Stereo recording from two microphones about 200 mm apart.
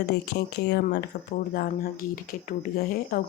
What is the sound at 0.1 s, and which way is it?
A woman's voice, 55° left (ahead or behind).